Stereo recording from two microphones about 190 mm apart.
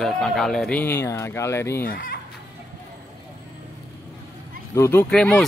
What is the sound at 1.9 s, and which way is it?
Speech, 50° left (ahead or behind).